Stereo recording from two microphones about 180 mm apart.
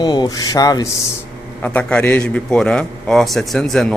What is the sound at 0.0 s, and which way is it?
Speech, 25° left (ahead or behind).